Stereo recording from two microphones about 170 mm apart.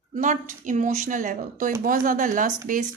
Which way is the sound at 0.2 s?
50° right (ahead or behind).